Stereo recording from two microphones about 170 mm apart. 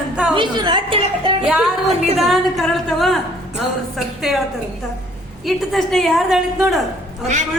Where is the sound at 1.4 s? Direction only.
Centre (ahead or behind).